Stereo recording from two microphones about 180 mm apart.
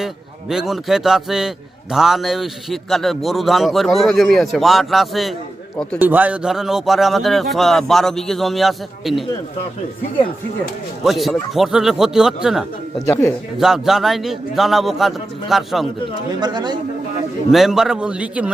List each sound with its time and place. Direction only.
0.0 s a man's voice: 5° right (ahead or behind)
6.0 s a man's voice: 10° right (ahead or behind)
11.0 s a man's voice: centre (ahead or behind)
13.0 s speech: 15° left (ahead or behind)
13.6 s a man's voice: centre (ahead or behind)
16.3 s speech: 25° right (ahead or behind)
17.5 s a man's voice: centre (ahead or behind)